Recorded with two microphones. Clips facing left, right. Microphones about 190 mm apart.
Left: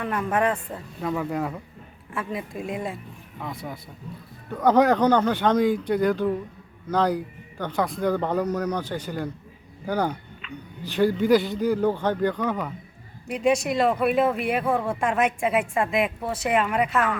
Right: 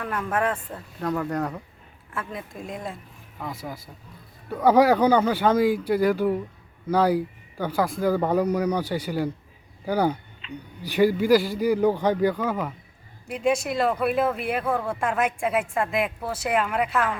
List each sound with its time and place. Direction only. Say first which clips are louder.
0.0 s speech: left 2 dB; 5° left (ahead or behind)
10.4 s a sound: right 2 dB; 30° right (ahead or behind)
10.8 s speech: right 1 dB; 10° right (ahead or behind)